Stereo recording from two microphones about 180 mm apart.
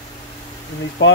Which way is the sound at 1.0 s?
80° left.